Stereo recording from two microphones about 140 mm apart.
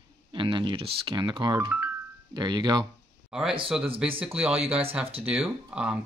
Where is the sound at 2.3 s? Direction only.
30° right (ahead or behind).